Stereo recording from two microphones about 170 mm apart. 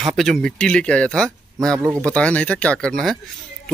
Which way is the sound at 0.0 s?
Centre (ahead or behind).